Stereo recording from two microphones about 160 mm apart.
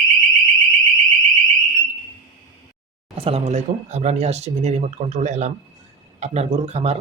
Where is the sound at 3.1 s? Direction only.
35° right (ahead or behind).